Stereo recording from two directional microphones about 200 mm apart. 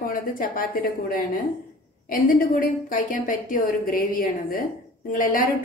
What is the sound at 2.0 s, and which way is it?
A woman's voice, 45° left (ahead or behind).